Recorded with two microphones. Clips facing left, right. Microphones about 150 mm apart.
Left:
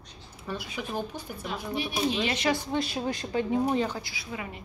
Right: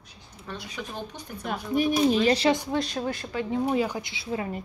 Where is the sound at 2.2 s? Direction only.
35° right (ahead or behind).